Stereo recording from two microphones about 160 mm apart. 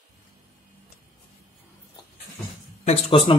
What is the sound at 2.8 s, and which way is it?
Speech, 35° left (ahead or behind).